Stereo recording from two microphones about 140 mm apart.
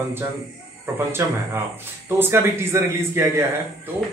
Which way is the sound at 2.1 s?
15° right (ahead or behind).